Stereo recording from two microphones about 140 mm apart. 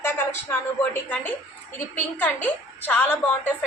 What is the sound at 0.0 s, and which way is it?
A woman's voice, 15° left (ahead or behind).